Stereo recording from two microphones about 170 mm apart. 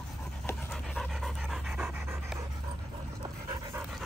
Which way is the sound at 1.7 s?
10° right (ahead or behind).